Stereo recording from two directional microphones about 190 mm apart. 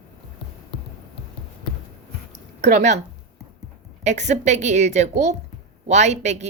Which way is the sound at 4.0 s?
35° right (ahead or behind).